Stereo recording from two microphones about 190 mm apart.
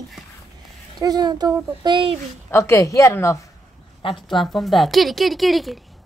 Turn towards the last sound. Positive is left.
turn(degrees=0)  # may be behind; listen again after turning